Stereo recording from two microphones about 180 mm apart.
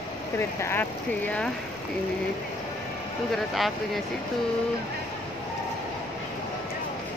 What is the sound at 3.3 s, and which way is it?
Speech, centre (ahead or behind).